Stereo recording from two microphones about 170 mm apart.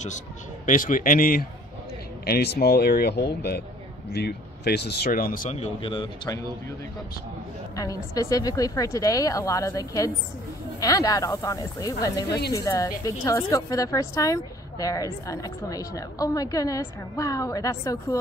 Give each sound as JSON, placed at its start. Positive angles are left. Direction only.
{"t": 0.7, "sound": "a man's voice", "side_deg": 50}
{"t": 2.2, "sound": "speech", "side_deg": 70}
{"t": 7.7, "sound": "a woman's voice", "side_deg": 20}